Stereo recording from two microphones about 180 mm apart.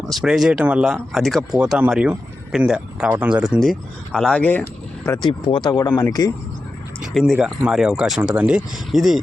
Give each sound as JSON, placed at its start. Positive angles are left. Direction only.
{"t": 0.1, "sound": "speech", "side_deg": 0}
{"t": 7.0, "sound": "speech", "side_deg": 0}